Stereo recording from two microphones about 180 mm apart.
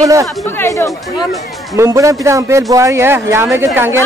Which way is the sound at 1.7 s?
15° right (ahead or behind).